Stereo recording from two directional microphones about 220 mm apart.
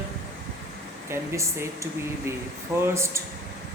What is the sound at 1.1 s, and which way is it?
Speech, 10° right (ahead or behind).